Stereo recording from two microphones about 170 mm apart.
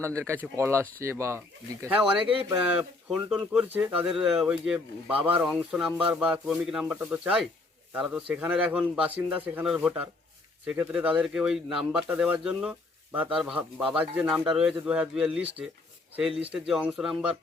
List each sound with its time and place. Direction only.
0.0 s speech: 15° right (ahead or behind)